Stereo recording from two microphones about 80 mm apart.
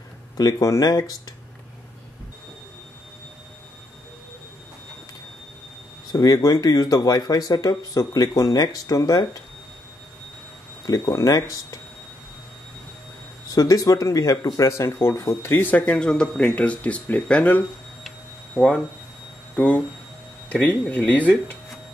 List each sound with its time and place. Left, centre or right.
0.4 s speech: left
6.1 s speech: left
10.9 s speech: left
13.5 s speech: left
15.7 s speech: centre
20.4 s speech: centre